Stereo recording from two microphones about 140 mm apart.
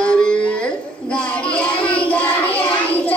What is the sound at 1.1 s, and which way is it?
Child singing, 10° left (ahead or behind).